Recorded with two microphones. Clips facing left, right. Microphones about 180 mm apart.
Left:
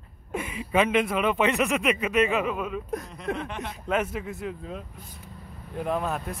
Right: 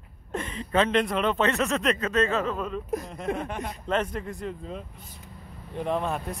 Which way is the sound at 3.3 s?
45° right (ahead or behind).